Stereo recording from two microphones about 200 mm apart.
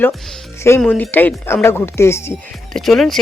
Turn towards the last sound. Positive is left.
turn(degrees=0)  # may be behind; listen again after turning